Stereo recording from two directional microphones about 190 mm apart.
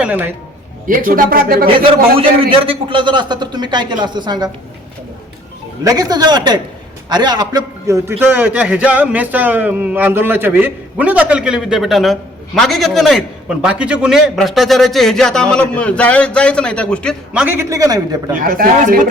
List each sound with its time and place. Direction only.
0.0 s a man's voice: 10° right (ahead or behind)
0.9 s speech: 45° right (ahead or behind)
2.1 s a man's voice: 30° right (ahead or behind)
5.8 s a man's voice: 20° right (ahead or behind); by 17.2 s 5° left (ahead or behind)
17.3 s a man's voice: 10° right (ahead or behind)
18.3 s speech: 50° right (ahead or behind)